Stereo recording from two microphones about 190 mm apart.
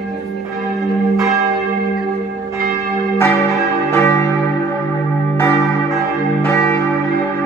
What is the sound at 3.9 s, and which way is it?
Church bell, 15° left (ahead or behind).